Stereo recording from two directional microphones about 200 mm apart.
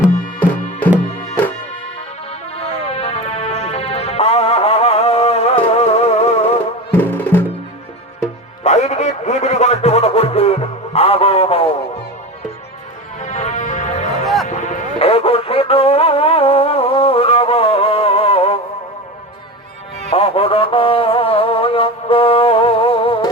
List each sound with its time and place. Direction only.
0.3 s music: 10° left (ahead or behind)
2.6 s music: 30° left (ahead or behind)
6.9 s music: 10° left (ahead or behind)
8.6 s music: 35° left (ahead or behind)
13.1 s music: 35° left (ahead or behind)
20.1 s music: 30° left (ahead or behind)